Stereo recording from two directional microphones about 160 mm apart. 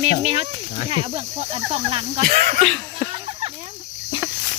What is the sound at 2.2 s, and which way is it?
Speech, 60° right (ahead or behind).